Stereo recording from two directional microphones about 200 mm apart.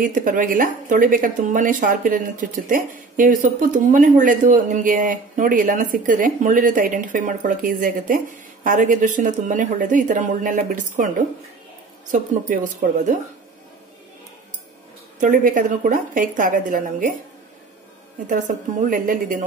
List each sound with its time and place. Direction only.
0.0 s a woman's voice: 45° right (ahead or behind)
12.1 s a woman's voice: 40° right (ahead or behind)
15.1 s a woman's voice: 40° right (ahead or behind)
18.2 s a woman's voice: 40° right (ahead or behind)